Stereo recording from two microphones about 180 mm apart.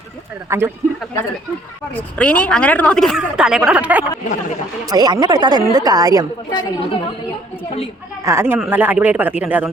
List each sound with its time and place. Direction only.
0.5 s speech: 15° right (ahead or behind)
2.0 s a woman's voice: 10° left (ahead or behind); by 4.0 s 10° right (ahead or behind)
4.9 s speech: 20° right (ahead or behind)
6.5 s a woman's voice: 25° left (ahead or behind)
8.2 s speech: 15° right (ahead or behind)